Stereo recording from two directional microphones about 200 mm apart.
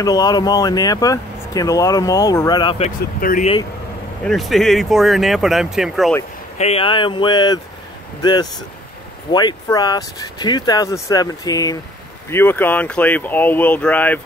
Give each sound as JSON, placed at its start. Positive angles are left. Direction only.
{"t": 0.0, "sound": "speech", "side_deg": 20}
{"t": 3.2, "sound": "speech", "side_deg": 45}
{"t": 4.2, "sound": "speech", "side_deg": 0}
{"t": 6.6, "sound": "speech", "side_deg": 30}